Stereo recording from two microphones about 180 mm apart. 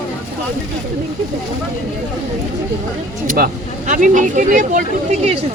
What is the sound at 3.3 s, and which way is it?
Speech, 55° right (ahead or behind).